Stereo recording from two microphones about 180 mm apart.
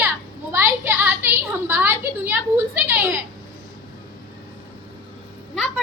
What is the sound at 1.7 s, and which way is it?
A child's voice, 10° right (ahead or behind).